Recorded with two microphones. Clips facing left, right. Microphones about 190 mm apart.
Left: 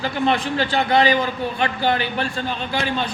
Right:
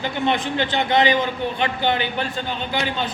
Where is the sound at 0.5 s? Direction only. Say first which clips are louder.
Left 1 dB; 20° right (ahead or behind).